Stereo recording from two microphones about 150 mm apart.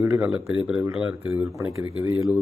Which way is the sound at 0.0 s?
10° right (ahead or behind).